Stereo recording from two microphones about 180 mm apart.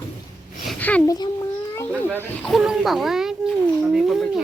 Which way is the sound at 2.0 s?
10° left (ahead or behind).